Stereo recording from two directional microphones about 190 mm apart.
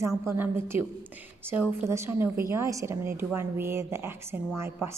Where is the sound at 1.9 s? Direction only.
15° right (ahead or behind).